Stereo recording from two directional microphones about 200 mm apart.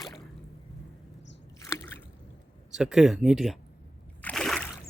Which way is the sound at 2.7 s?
Centre (ahead or behind).